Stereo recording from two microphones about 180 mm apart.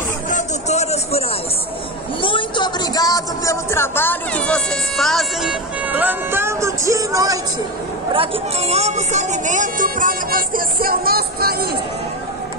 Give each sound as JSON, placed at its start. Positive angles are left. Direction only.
{"t": 0.3, "sound": "a sound", "side_deg": 40}
{"t": 2.2, "sound": "speech", "side_deg": 25}
{"t": 8.1, "sound": "speech", "side_deg": -30}